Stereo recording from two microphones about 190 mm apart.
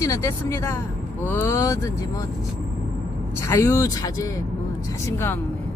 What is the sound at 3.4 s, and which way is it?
Speech, 15° left (ahead or behind).